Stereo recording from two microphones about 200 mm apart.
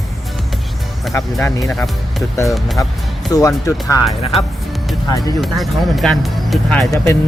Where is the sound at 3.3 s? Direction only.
20° left (ahead or behind).